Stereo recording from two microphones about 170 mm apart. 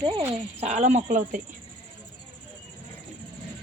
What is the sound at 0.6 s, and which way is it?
Speech, 45° right (ahead or behind).